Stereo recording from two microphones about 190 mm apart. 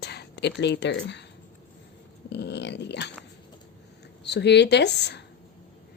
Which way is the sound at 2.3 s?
65° left (ahead or behind).